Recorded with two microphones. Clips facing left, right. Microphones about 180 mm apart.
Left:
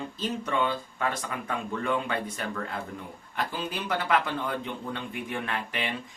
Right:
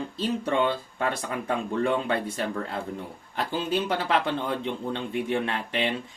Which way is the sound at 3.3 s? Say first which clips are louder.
Right 5 dB; 30° right (ahead or behind).